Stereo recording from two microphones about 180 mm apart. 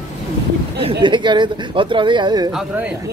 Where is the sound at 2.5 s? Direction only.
10° right (ahead or behind).